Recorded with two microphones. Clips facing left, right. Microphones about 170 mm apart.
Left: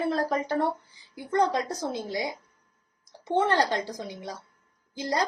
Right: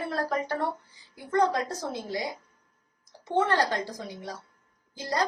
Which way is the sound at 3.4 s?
20° left (ahead or behind).